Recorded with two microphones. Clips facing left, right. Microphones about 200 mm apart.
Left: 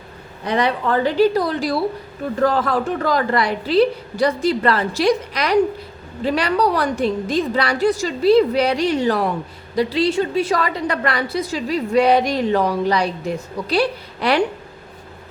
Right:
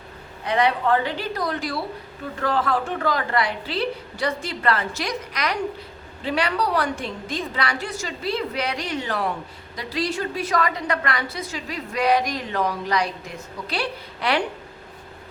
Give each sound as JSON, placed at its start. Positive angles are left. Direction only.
{"t": 0.4, "sound": "a woman's voice", "side_deg": 35}